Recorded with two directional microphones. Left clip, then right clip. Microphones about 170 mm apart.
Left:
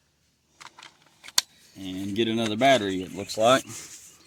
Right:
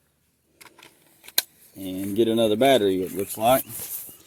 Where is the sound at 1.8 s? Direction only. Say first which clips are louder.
Right 4 dB; 55° left (ahead or behind).